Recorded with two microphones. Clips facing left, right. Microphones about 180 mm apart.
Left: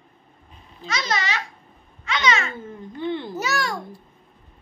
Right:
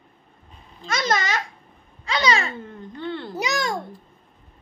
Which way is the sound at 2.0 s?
35° right (ahead or behind).